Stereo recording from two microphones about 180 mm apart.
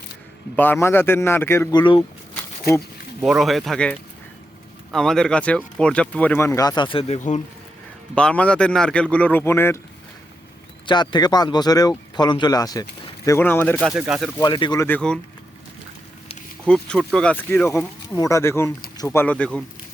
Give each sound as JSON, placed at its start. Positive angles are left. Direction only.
{"t": 0.5, "sound": "speech", "side_deg": 10}
{"t": 2.7, "sound": "speech", "side_deg": 60}
{"t": 3.2, "sound": "speech", "side_deg": -5}
{"t": 8.1, "sound": "speech", "side_deg": 5}
{"t": 10.8, "sound": "speech", "side_deg": 25}
{"t": 13.9, "sound": "speech", "side_deg": -5}
{"t": 14.3, "sound": "speech", "side_deg": 25}
{"t": 14.8, "sound": "speech", "side_deg": 5}
{"t": 16.6, "sound": "speech", "side_deg": 5}